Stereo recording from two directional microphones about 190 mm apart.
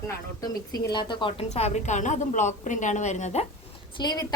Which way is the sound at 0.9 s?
25° left (ahead or behind).